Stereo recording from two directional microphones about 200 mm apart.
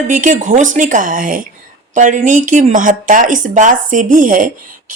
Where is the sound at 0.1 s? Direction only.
40° right (ahead or behind).